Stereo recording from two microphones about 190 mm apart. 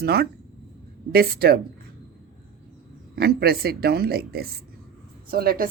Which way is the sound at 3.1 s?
55° right (ahead or behind).